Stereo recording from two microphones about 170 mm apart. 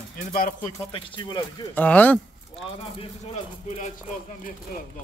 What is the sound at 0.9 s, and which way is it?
Speech, 25° left (ahead or behind).